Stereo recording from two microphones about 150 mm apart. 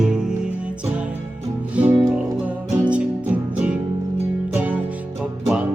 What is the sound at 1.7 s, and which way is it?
Music, 10° right (ahead or behind).